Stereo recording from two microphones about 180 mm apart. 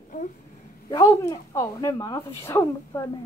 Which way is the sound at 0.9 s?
15° left (ahead or behind).